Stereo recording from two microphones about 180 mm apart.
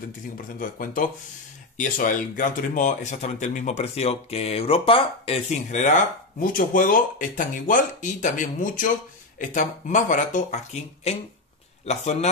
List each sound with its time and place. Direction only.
0.6 s a man's voice: 50° left (ahead or behind)